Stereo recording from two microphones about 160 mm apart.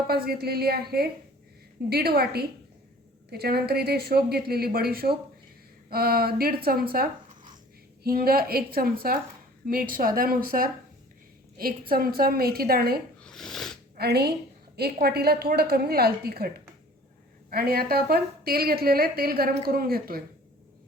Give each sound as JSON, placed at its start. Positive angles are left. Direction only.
{"t": 0.1, "sound": "a woman's voice", "side_deg": -75}
{"t": 13.2, "sound": "a sound", "side_deg": 5}
{"t": 13.9, "sound": "speech", "side_deg": -85}
{"t": 14.8, "sound": "a woman's voice", "side_deg": -80}
{"t": 17.5, "sound": "a woman's voice", "side_deg": -75}